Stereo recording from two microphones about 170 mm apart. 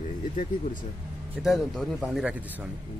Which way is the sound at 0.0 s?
50° left (ahead or behind).